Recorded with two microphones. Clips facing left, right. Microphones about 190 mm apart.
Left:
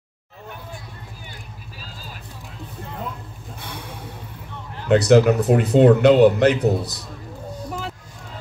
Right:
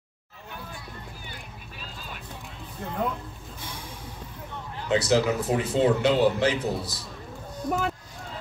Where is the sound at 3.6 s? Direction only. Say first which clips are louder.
Left 5 dB; 65° left (ahead or behind).